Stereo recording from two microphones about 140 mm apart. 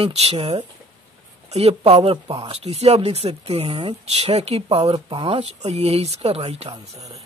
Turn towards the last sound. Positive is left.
turn(degrees=-50)  # may be behind; listen again after turning